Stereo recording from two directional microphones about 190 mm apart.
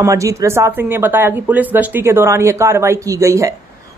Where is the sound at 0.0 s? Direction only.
15° right (ahead or behind).